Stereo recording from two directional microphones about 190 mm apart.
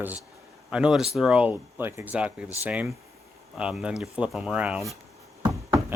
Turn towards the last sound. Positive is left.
turn(degrees=-15)  # may be behind; listen again after turning